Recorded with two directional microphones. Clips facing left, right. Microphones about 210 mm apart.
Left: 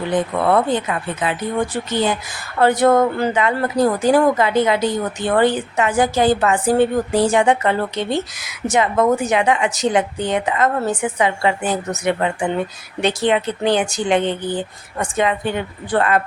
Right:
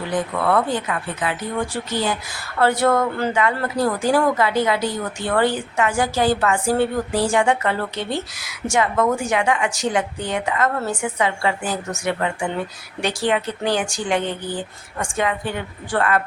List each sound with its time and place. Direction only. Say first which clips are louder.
0.1 s speech: left 3 dB; 25° left (ahead or behind)